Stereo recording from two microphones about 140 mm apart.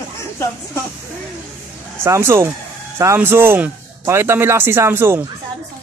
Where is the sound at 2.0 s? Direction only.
20° right (ahead or behind).